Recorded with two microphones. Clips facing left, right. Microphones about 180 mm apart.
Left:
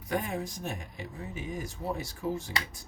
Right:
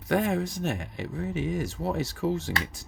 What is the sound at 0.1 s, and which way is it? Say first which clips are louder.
Speech: right 7 dB; 80° right.